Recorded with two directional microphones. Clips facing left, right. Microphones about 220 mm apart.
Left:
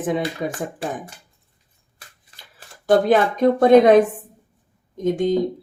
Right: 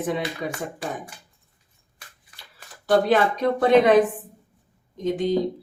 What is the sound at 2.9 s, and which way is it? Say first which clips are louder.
Speech: left 3 dB; 50° left (ahead or behind).